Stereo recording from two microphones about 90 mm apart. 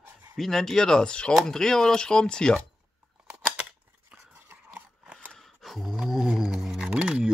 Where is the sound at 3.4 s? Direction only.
10° right (ahead or behind).